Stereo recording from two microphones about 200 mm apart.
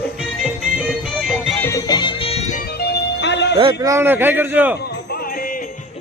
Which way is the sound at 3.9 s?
10° right (ahead or behind).